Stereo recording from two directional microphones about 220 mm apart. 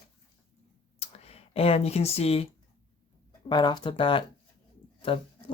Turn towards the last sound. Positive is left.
turn(degrees=25)  # may be behind; listen again after turning